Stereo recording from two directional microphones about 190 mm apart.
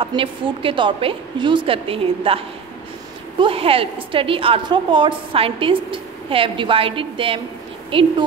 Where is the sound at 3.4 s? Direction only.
30° right (ahead or behind).